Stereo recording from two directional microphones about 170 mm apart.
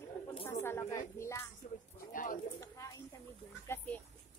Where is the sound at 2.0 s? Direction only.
55° left (ahead or behind).